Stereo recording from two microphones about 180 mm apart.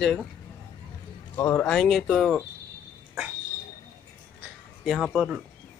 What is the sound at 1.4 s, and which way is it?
Speech, 10° left (ahead or behind).